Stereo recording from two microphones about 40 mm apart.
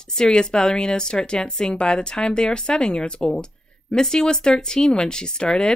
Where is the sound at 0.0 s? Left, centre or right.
Centre.